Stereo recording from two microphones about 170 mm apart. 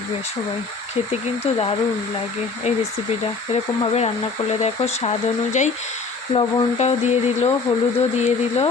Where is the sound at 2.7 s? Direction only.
45° left (ahead or behind).